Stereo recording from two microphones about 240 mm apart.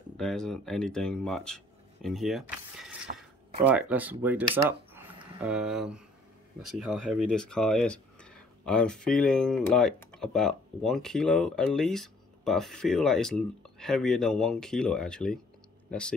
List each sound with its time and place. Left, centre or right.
0.2 s speech: centre
3.1 s a sound: right
3.6 s speech: centre